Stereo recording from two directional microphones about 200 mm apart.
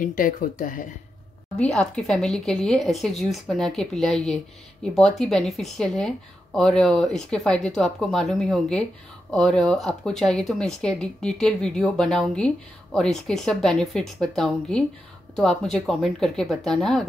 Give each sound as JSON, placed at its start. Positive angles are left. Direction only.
{"t": 0.0, "sound": "speech", "side_deg": 45}
{"t": 1.6, "sound": "speech", "side_deg": 5}